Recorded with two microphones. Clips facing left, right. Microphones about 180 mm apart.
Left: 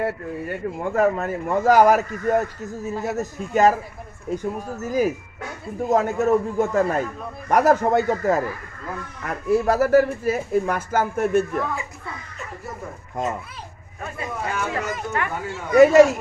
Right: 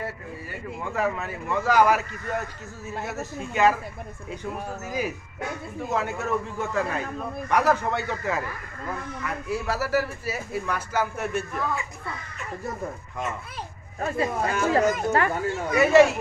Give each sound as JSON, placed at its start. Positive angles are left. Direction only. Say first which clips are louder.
{"t": 0.0, "sound": "speech", "louder": "left 9 dB", "side_deg": 55}
{"t": 14.0, "sound": "speech", "louder": "right 4 dB", "side_deg": -35}
{"t": 15.7, "sound": "speech", "louder": "left 5 dB", "side_deg": 45}